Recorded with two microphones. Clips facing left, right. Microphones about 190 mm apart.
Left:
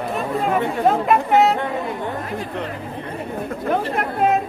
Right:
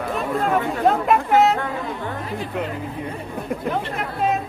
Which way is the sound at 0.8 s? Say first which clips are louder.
Left 1 dB; centre (ahead or behind).